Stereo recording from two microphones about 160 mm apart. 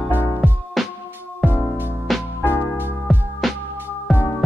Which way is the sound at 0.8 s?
Centre (ahead or behind).